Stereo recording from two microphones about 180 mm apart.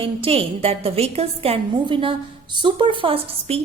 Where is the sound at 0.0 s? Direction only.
30° right (ahead or behind).